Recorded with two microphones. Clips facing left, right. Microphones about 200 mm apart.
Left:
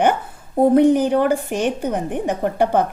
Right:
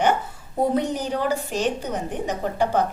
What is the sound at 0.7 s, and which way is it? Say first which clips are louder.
A woman's voice: left 10 dB; 55° left (ahead or behind).